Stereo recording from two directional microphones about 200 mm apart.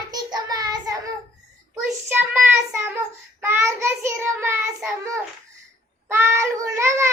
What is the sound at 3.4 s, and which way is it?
Child singing, 15° right (ahead or behind).